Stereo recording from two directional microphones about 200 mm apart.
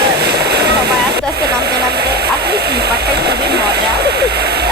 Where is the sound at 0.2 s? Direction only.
55° right (ahead or behind).